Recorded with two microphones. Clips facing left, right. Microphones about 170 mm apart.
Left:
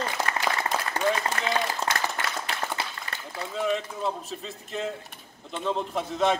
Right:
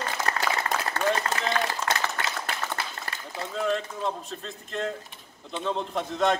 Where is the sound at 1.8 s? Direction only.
35° left (ahead or behind).